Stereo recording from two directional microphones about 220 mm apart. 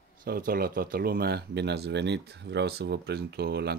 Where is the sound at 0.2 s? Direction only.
40° right (ahead or behind).